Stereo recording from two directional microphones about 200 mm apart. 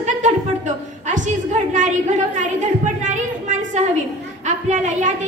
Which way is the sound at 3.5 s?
35° right (ahead or behind).